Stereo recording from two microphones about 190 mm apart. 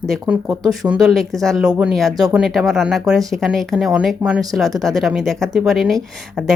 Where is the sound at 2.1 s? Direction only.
20° right (ahead or behind).